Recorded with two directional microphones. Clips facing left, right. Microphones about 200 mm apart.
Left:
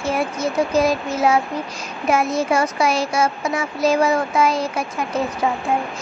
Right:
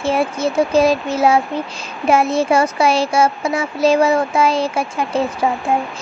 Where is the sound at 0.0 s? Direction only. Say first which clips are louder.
Right 4 dB; 25° right (ahead or behind).